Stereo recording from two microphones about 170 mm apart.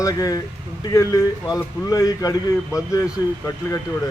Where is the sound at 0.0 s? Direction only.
20° left (ahead or behind).